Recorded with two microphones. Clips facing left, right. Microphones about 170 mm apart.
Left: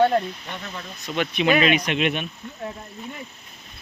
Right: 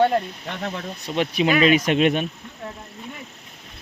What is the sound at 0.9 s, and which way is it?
Speech, 30° right (ahead or behind).